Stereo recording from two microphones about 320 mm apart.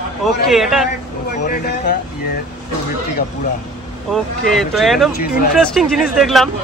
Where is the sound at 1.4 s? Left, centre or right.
Left.